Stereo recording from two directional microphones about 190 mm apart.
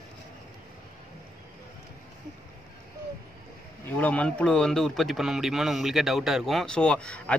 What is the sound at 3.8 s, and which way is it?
Speech, 10° left (ahead or behind).